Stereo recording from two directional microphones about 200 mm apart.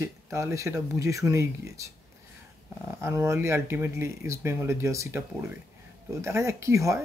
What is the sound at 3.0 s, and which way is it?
Speech, 15° right (ahead or behind).